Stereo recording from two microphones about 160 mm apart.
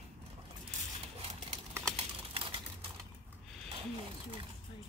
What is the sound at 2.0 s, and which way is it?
Typing, 35° right (ahead or behind).